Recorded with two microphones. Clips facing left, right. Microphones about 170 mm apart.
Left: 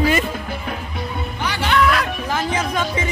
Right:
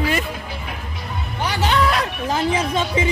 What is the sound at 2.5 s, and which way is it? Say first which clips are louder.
Speech: right 1 dB; 30° right (ahead or behind).